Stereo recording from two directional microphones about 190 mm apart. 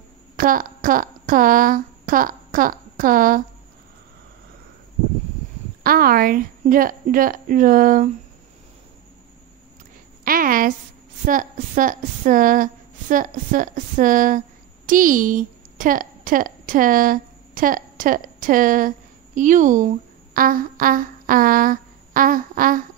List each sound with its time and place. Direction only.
0.4 s a woman's voice: 45° right (ahead or behind)
5.9 s a woman's voice: 50° right (ahead or behind)
10.2 s a woman's voice: 50° right (ahead or behind)
20.3 s a sound: 50° right (ahead or behind)